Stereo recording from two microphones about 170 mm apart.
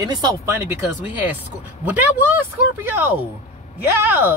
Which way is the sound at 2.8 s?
10° right (ahead or behind).